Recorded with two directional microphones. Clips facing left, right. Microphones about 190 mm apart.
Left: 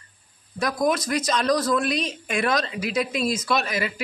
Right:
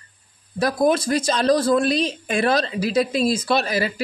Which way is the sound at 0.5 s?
30° right (ahead or behind).